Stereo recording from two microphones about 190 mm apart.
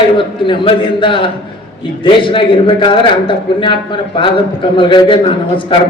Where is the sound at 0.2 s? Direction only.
25° left (ahead or behind).